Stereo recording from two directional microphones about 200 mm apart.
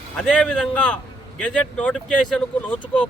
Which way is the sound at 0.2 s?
5° left (ahead or behind).